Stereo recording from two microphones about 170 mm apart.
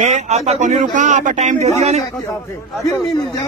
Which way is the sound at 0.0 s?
45° right (ahead or behind).